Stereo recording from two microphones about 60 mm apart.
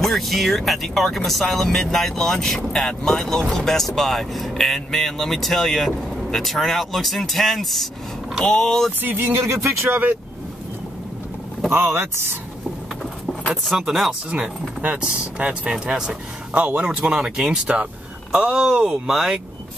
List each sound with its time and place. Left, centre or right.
0.0 s speech: centre
9.0 s speech: right
11.7 s speech: right
13.7 s speech: centre
14.8 s speech: right
15.7 s speech: centre
17.4 s speech: right